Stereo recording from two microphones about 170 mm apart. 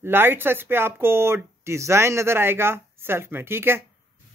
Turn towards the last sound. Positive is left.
turn(degrees=-15)  # may be behind; listen again after turning